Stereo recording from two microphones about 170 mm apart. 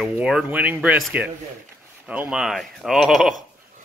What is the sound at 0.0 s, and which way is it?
Speech, 5° right (ahead or behind).